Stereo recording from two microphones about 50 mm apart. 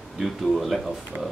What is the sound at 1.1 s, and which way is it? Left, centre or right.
Speech, right.